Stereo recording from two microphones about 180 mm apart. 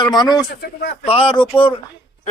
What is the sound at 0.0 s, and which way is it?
Speech, 25° left (ahead or behind).